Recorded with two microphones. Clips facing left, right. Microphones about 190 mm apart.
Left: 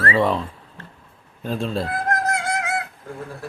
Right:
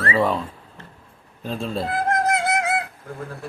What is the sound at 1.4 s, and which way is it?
Speech, centre (ahead or behind).